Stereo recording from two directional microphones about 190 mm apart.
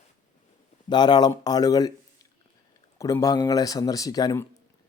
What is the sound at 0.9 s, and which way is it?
Speech, 20° left (ahead or behind).